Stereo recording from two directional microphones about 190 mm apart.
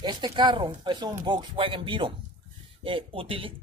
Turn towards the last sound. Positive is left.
turn(degrees=-30)  # may be behind; listen again after turning